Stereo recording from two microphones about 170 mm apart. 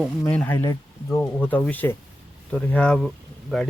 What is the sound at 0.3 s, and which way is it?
Speech, 10° left (ahead or behind).